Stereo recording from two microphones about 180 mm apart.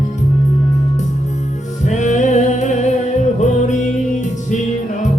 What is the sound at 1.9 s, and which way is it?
Music, 40° left (ahead or behind).